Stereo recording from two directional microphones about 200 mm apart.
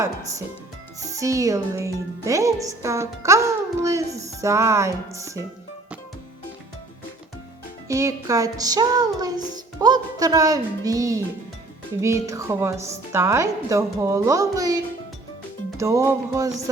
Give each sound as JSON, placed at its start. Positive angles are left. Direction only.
{"t": 0.0, "sound": "a woman's voice", "side_deg": -15}
{"t": 7.9, "sound": "music", "side_deg": -15}
{"t": 11.9, "sound": "a woman's voice", "side_deg": -15}
{"t": 15.8, "sound": "a woman's voice", "side_deg": -15}